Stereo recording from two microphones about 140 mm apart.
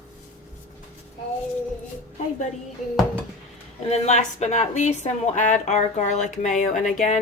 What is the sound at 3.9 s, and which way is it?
A woman's voice, 55° left (ahead or behind).